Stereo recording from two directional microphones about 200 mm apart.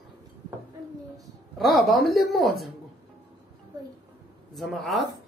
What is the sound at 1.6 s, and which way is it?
Speech, centre (ahead or behind).